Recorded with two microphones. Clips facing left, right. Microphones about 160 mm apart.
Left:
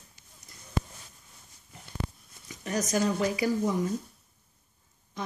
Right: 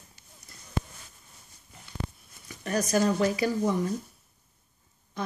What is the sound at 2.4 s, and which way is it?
Speech, 20° left (ahead or behind).